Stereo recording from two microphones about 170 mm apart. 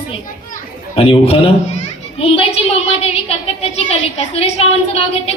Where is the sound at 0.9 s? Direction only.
35° left (ahead or behind).